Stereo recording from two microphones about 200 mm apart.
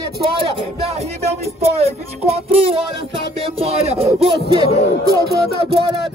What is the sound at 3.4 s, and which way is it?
Music, 30° right (ahead or behind).